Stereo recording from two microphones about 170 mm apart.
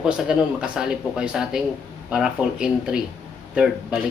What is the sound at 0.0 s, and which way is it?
Speech, 5° right (ahead or behind).